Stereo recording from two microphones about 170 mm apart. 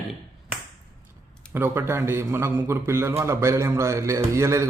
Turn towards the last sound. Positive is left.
turn(degrees=-15)  # may be behind; listen again after turning